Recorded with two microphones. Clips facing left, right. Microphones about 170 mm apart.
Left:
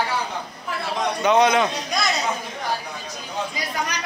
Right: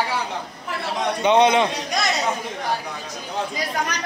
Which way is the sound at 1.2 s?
25° right (ahead or behind).